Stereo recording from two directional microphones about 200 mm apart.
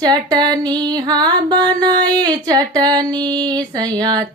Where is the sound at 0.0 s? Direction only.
20° right (ahead or behind).